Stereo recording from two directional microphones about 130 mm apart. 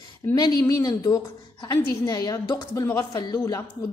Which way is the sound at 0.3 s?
30° left (ahead or behind).